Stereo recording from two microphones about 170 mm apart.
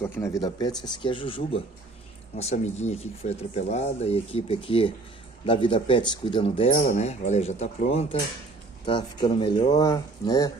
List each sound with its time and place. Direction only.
0.0 s speech: 20° left (ahead or behind)